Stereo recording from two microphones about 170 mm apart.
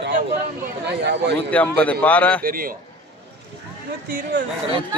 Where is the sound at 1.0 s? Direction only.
85° right.